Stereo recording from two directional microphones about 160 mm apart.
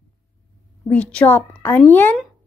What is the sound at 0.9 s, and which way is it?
A woman's voice, 10° left (ahead or behind).